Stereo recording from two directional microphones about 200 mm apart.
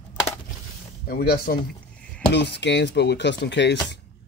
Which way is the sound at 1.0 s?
50° left (ahead or behind).